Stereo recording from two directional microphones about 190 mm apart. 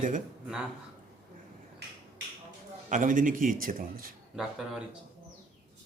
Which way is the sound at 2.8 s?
45° right (ahead or behind).